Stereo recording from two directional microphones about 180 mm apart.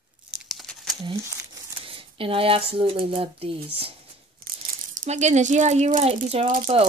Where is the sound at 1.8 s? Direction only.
30° right (ahead or behind).